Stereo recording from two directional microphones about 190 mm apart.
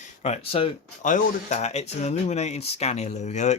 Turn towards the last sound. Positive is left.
turn(degrees=35)  # may be behind; listen again after turning